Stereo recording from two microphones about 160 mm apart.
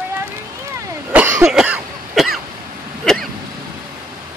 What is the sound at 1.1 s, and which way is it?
Cough, 10° right (ahead or behind).